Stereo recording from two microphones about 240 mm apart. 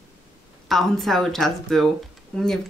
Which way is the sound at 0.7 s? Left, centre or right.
Centre.